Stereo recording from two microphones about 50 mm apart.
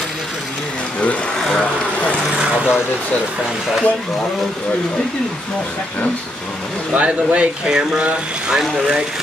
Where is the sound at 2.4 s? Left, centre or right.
Centre.